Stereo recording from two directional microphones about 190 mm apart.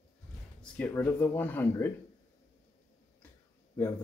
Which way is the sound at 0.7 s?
10° left (ahead or behind).